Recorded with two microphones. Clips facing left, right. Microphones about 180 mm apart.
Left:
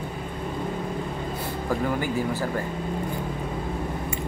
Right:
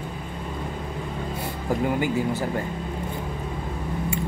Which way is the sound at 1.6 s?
20° right (ahead or behind).